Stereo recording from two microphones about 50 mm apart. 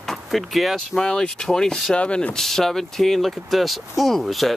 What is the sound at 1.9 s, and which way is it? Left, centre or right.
Speech, left.